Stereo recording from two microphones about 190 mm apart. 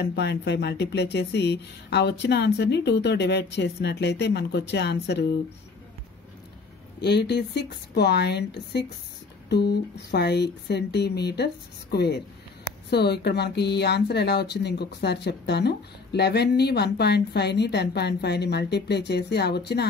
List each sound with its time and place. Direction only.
0.0 s speech: 60° left (ahead or behind)
7.0 s speech: 60° left (ahead or behind)